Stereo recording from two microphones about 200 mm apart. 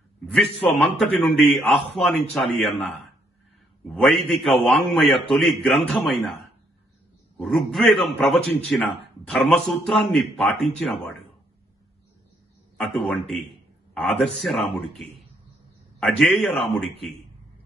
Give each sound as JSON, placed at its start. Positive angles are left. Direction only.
{"t": 0.3, "sound": "a man's voice", "side_deg": 0}
{"t": 3.8, "sound": "a man's voice", "side_deg": 0}
{"t": 12.7, "sound": "a man's voice", "side_deg": 0}